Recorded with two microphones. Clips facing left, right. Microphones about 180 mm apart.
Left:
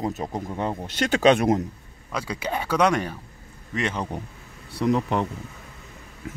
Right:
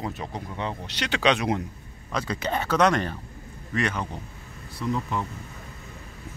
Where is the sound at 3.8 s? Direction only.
25° left (ahead or behind).